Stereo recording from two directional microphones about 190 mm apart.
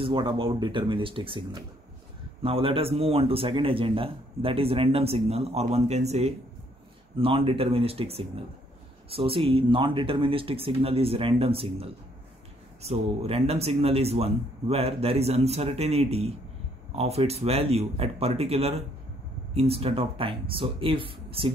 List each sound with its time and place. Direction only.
0.0 s a man's voice: 25° right (ahead or behind)